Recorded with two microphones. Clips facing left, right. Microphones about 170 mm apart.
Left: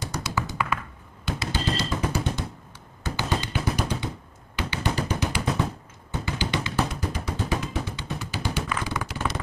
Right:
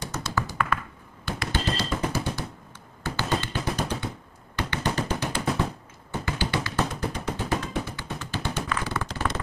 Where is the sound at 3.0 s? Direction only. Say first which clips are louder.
Even; 15° left (ahead or behind).